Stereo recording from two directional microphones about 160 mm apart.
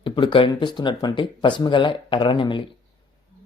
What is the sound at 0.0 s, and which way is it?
Speech, 30° left (ahead or behind).